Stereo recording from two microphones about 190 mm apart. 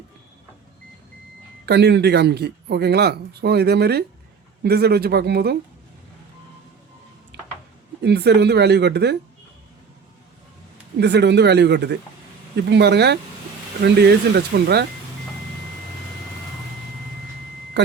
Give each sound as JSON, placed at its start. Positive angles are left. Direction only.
{"t": 1.6, "sound": "speech", "side_deg": -60}
{"t": 8.0, "sound": "speech", "side_deg": -60}
{"t": 10.9, "sound": "speech", "side_deg": -65}
{"t": 17.8, "sound": "speech", "side_deg": -65}